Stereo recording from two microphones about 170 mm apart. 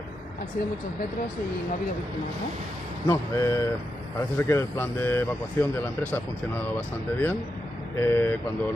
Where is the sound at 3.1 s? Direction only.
20° left (ahead or behind).